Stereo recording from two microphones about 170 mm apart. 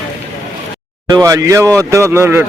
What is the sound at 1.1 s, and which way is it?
Speech, 20° right (ahead or behind).